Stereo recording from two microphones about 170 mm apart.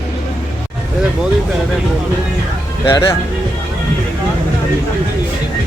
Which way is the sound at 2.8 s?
25° left (ahead or behind).